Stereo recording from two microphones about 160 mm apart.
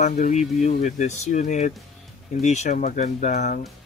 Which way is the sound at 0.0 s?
50° left (ahead or behind).